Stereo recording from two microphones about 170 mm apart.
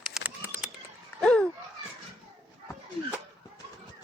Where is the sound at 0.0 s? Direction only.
5° right (ahead or behind).